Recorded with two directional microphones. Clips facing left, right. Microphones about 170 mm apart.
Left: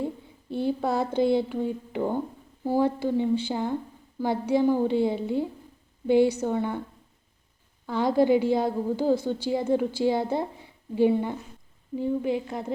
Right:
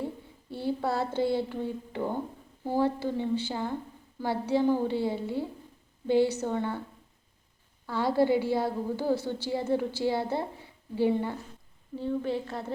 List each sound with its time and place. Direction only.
0.5 s a woman's voice: 20° left (ahead or behind)
7.9 s a woman's voice: 15° left (ahead or behind)